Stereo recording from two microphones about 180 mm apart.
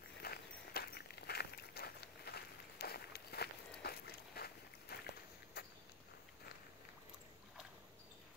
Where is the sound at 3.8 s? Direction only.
60° left (ahead or behind).